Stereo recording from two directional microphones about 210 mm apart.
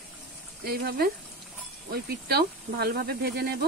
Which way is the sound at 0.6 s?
45° right (ahead or behind).